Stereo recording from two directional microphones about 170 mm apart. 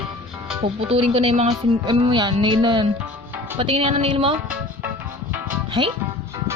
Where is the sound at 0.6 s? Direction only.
35° right (ahead or behind).